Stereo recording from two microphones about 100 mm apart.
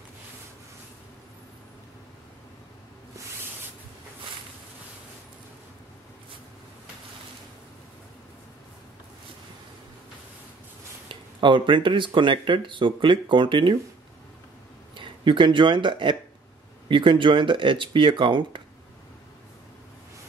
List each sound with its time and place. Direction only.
11.1 s speech: 55° right (ahead or behind)
15.0 s speech: 55° right (ahead or behind)